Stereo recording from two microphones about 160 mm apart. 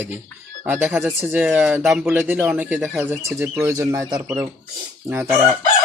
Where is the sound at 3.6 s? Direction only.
20° right (ahead or behind).